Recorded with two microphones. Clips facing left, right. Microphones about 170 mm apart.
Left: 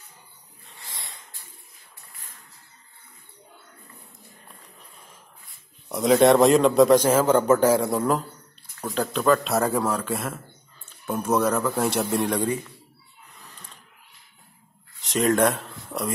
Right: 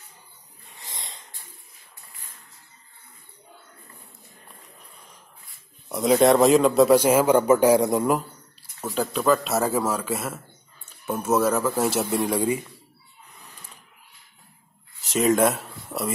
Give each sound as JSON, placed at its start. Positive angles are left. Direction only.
{"t": 0.7, "sound": "a sound", "side_deg": -20}
{"t": 5.9, "sound": "a man's voice", "side_deg": 0}
{"t": 15.0, "sound": "speech", "side_deg": 0}